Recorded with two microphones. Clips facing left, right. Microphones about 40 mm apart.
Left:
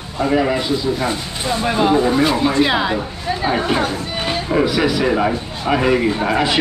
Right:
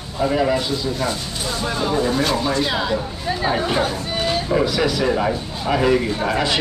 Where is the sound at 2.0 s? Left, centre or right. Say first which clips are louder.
Left 4 dB; centre.